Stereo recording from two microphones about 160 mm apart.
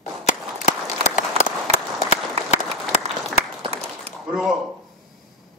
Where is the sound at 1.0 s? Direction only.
45° left (ahead or behind).